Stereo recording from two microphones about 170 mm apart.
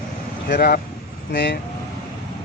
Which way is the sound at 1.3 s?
90° left.